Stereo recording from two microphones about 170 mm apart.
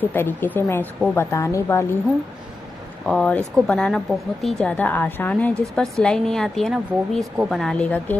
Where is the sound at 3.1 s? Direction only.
5° left (ahead or behind).